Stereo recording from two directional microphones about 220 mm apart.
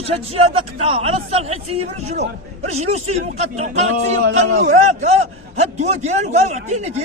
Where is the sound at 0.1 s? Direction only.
25° right (ahead or behind).